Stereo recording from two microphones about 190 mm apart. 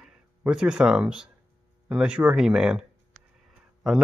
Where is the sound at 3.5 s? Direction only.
Centre (ahead or behind).